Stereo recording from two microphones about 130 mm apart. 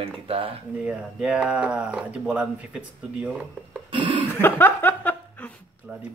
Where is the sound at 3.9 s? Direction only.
40° right (ahead or behind).